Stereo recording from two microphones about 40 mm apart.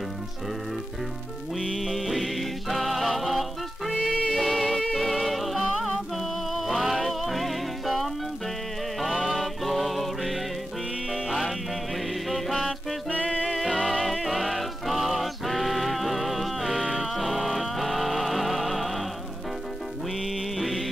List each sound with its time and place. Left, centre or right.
1.6 s music: centre
4.1 s music: centre
4.4 s music: centre
13.1 s music: left
13.6 s music: centre
20.5 s music: centre